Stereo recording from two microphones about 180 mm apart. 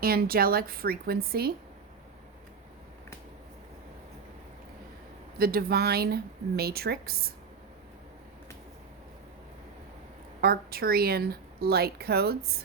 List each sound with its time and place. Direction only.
0.0 s speech: 55° right (ahead or behind)
5.4 s speech: 55° right (ahead or behind)
10.4 s speech: 55° right (ahead or behind)